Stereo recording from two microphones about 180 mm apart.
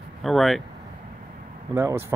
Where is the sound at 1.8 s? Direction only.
15° right (ahead or behind).